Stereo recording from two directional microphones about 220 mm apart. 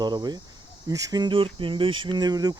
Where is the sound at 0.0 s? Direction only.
20° right (ahead or behind).